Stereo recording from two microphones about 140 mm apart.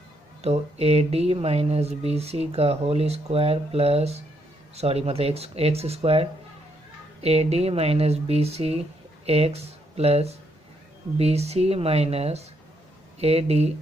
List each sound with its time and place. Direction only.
0.4 s speech: 50° right (ahead or behind)